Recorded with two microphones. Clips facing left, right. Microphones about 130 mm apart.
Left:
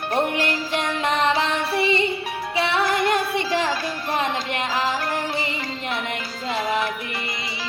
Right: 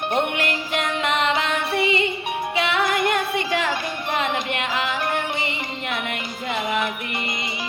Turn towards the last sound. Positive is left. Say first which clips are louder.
# right 2 dB
turn(degrees=-20)  # may be behind; listen again after turning